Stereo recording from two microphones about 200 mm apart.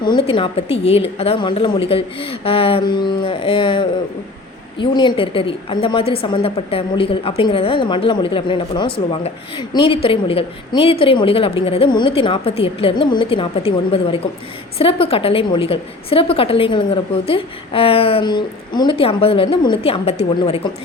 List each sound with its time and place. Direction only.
0.0 s a woman's voice: 25° left (ahead or behind)